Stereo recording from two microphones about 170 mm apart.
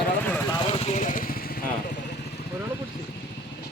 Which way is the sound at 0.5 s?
35° left (ahead or behind).